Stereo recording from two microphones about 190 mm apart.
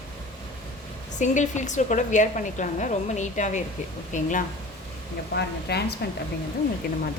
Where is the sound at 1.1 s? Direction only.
40° left (ahead or behind).